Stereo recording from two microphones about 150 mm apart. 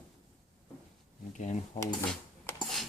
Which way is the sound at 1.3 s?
50° left (ahead or behind).